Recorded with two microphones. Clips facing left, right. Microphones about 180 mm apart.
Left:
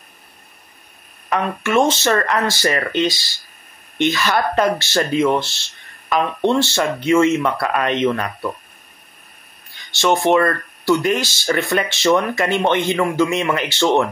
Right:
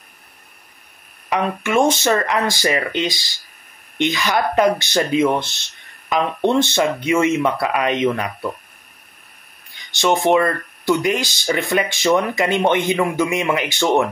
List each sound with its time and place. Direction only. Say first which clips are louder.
1.6 s speech: left 1 dB; 15° right (ahead or behind)
9.8 s speech: even; 15° right (ahead or behind)